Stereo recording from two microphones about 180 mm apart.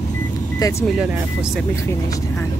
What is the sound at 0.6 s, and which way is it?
Speech, 20° left (ahead or behind).